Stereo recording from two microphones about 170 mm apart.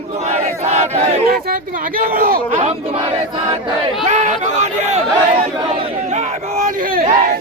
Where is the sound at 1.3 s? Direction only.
55° right (ahead or behind); by 3.1 s 35° right (ahead or behind).